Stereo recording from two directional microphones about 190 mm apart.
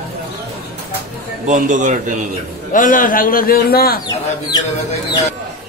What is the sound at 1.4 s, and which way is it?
Speech, 40° right (ahead or behind).